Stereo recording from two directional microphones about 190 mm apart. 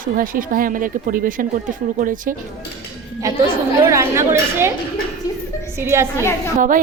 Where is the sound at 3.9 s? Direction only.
15° right (ahead or behind).